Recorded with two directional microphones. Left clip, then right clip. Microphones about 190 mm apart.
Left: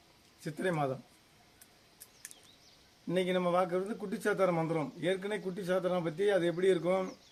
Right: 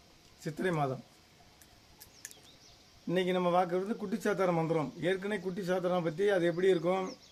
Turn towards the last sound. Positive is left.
turn(degrees=-15)  # may be behind; listen again after turning